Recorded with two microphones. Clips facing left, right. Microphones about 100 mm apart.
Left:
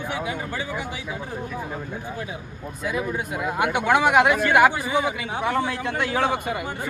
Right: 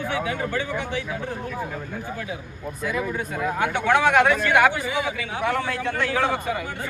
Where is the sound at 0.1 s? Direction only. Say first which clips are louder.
Right 3 dB; 15° left (ahead or behind).